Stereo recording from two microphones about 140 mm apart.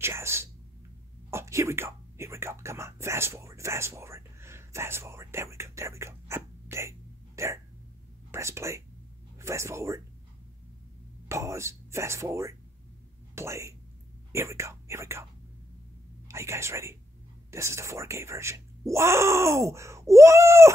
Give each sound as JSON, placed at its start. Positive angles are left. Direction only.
{"t": 0.0, "sound": "speech", "side_deg": -20}
{"t": 1.3, "sound": "whispering", "side_deg": -20}
{"t": 8.3, "sound": "speech", "side_deg": -20}
{"t": 11.2, "sound": "speech", "side_deg": -20}
{"t": 16.3, "sound": "speech", "side_deg": -20}